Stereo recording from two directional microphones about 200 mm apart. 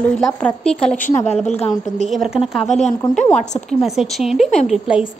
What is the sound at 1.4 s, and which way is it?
Speech, 30° left (ahead or behind).